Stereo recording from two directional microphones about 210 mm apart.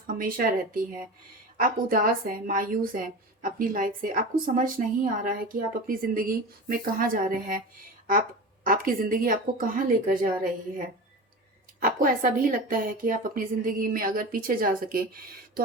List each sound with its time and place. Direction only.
0.1 s a woman's voice: 40° right (ahead or behind)
8.6 s a woman's voice: 40° right (ahead or behind)